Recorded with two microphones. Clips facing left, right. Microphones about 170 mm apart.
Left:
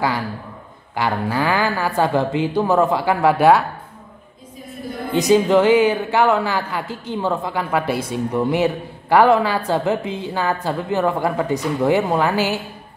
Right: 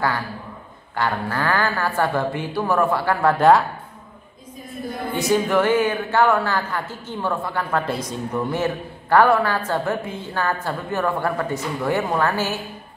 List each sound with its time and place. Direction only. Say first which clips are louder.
0.9 s speech: left 3 dB; 15° left (ahead or behind)
5.1 s speech: left 5 dB; 20° left (ahead or behind)